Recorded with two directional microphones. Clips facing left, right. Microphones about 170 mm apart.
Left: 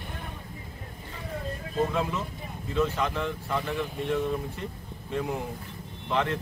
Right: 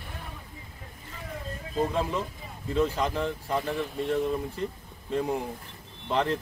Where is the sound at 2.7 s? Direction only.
35° right (ahead or behind).